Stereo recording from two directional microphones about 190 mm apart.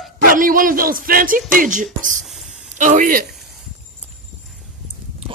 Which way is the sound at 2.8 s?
45° right (ahead or behind).